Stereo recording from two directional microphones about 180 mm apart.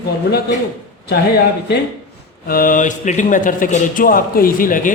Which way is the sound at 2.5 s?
50° left (ahead or behind).